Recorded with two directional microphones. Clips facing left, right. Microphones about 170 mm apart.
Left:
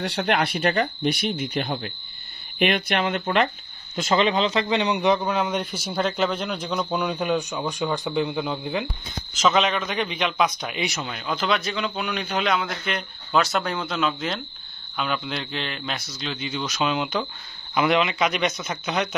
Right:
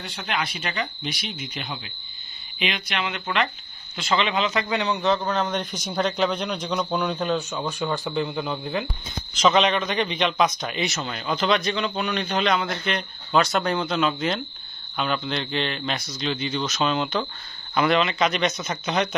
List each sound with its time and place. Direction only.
0.0 s a man's voice: 70° left (ahead or behind); by 8.8 s 15° left (ahead or behind)
9.3 s a man's voice: 5° left (ahead or behind)